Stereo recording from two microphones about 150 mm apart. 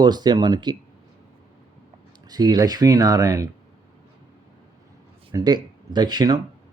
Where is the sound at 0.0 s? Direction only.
30° right (ahead or behind).